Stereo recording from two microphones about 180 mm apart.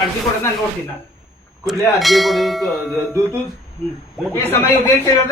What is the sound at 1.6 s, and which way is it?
Speech, centre (ahead or behind).